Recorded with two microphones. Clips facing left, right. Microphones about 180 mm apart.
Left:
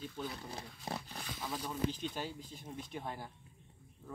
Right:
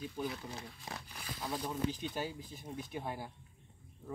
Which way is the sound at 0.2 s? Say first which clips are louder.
Right 4 dB; 10° right (ahead or behind).